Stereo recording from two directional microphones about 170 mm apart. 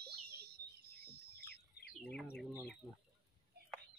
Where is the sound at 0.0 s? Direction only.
65° right (ahead or behind).